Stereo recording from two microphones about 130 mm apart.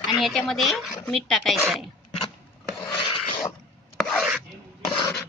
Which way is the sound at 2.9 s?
40° left (ahead or behind).